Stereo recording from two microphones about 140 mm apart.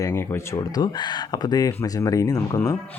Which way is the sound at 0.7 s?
30° left (ahead or behind).